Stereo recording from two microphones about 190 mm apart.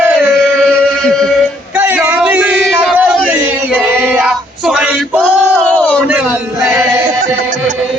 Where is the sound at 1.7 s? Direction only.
10° right (ahead or behind).